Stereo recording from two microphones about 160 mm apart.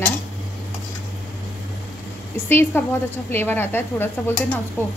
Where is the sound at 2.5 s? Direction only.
15° left (ahead or behind).